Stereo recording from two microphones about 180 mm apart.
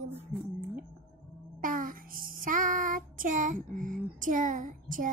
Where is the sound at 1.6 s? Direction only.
50° right (ahead or behind).